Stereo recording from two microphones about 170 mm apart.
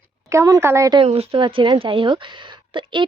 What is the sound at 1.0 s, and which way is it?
Speech, 35° right (ahead or behind).